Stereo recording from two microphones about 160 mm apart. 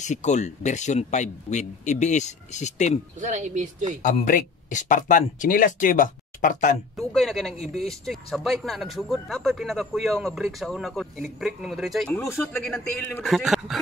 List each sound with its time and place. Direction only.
0.0 s speech: 50° left (ahead or behind)
3.2 s speech: 50° right (ahead or behind)
4.0 s speech: 55° left (ahead or behind)
7.0 s speech: centre (ahead or behind)
12.2 s speech: 15° left (ahead or behind)
13.2 s speech: centre (ahead or behind)